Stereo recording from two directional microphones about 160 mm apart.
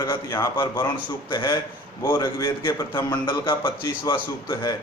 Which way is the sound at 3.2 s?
30° left (ahead or behind).